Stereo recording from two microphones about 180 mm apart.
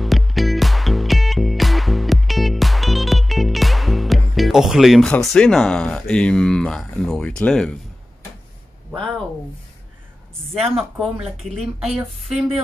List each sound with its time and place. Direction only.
0.0 s music: centre (ahead or behind)
11.0 s speech: centre (ahead or behind)